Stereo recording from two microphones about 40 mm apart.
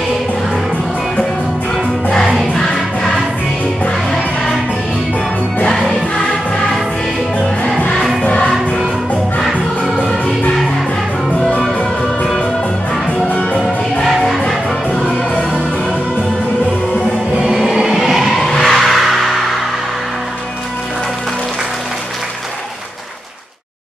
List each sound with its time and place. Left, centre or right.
2.1 s music: centre
5.8 s music: centre
8.2 s music: left
15.0 s music: left
17.3 s music: right
17.6 s a sound: centre
18.3 s music: centre